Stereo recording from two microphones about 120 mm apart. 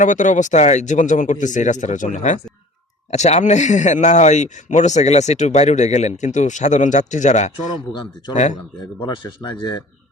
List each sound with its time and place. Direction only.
0.0 s speech: 90° left
3.1 s speech: 70° left (ahead or behind)
9.0 s speech: 40° left (ahead or behind)